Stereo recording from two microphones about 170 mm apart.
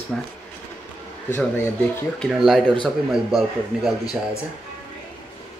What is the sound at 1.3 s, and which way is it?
A man's voice, 10° left (ahead or behind).